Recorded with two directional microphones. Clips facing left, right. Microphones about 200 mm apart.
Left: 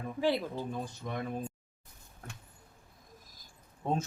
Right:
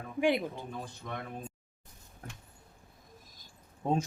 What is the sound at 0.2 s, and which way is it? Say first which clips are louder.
Speech: right 2 dB; 15° right (ahead or behind).